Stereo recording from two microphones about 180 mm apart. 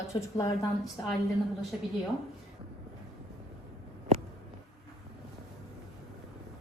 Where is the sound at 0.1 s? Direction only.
15° left (ahead or behind).